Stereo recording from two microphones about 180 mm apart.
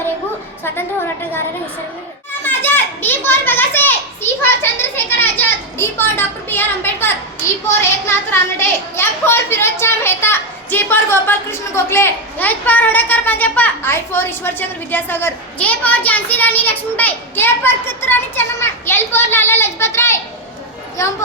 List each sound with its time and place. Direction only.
0.6 s a sound: 10° left (ahead or behind)
2.4 s children playing: 10° left (ahead or behind)
7.7 s a woman's voice: 15° left (ahead or behind)